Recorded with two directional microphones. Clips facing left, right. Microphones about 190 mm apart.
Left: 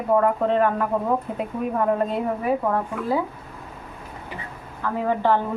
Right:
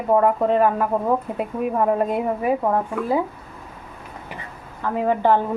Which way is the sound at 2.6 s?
20° right (ahead or behind).